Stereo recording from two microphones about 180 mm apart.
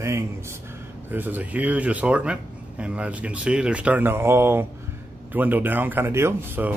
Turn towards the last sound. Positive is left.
turn(degrees=-15)  # may be behind; listen again after turning